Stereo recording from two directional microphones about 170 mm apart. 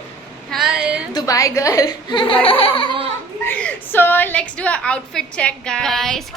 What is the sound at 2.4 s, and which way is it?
Music, 35° left (ahead or behind).